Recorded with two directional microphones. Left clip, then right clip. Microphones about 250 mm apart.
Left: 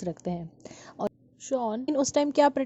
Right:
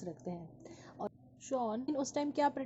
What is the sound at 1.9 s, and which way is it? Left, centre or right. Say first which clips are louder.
Speech: left 11 dB; left.